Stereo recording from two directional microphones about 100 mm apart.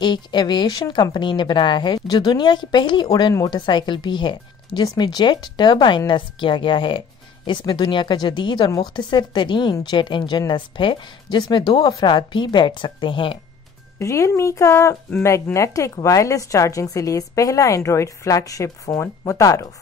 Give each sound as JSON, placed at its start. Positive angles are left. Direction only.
{"t": 0.0, "sound": "a woman's voice", "side_deg": 45}
{"t": 13.9, "sound": "a woman's voice", "side_deg": 30}